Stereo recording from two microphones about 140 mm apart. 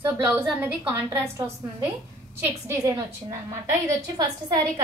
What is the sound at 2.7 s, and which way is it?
Speech, 20° right (ahead or behind).